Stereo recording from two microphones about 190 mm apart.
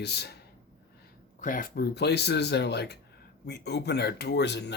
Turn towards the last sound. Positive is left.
turn(degrees=65)  # may be behind; listen again after turning